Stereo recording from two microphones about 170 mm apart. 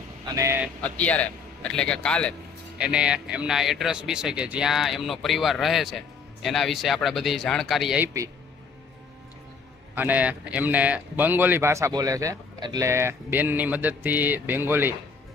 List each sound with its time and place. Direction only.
0.2 s speech: 20° right (ahead or behind)
0.7 s a man's voice: 10° left (ahead or behind)
2.8 s speech: 5° right (ahead or behind)
9.9 s a man's voice: 10° right (ahead or behind)